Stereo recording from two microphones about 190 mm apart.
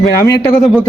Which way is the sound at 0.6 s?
Centre (ahead or behind).